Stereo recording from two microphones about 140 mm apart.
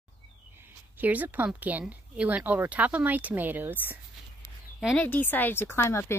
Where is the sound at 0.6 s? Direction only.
10° right (ahead or behind).